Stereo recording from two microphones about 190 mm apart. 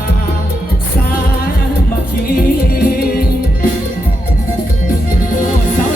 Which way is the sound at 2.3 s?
55° left (ahead or behind).